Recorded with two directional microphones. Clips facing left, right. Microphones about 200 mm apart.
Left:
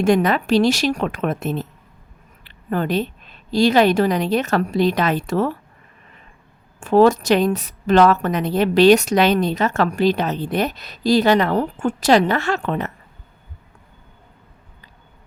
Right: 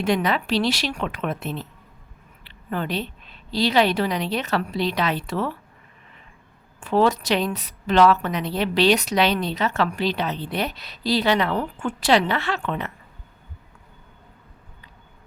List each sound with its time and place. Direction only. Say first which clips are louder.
0.0 s a woman's voice: left 6 dB; 45° left (ahead or behind)
6.7 s a woman's voice: left 6 dB; 45° left (ahead or behind)